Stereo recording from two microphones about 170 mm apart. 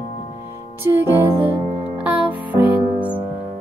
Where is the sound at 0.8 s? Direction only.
15° right (ahead or behind).